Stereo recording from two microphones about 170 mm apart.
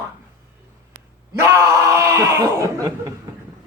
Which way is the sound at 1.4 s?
15° right (ahead or behind).